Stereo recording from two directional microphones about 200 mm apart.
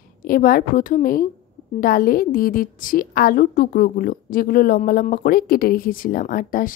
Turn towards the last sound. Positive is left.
turn(degrees=45)  # may be behind; listen again after turning